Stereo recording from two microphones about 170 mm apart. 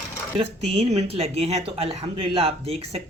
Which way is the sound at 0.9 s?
35° right (ahead or behind).